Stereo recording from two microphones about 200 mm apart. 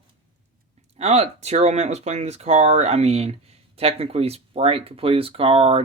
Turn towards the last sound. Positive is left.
turn(degrees=-30)  # may be behind; listen again after turning